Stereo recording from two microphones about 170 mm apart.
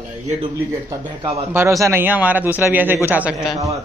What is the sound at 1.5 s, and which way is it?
A man's voice, 15° right (ahead or behind).